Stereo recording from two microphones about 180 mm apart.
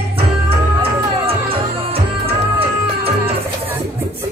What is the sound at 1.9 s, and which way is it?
Music, 30° right (ahead or behind).